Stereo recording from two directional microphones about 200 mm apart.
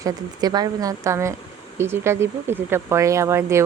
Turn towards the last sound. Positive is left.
turn(degrees=-15)  # may be behind; listen again after turning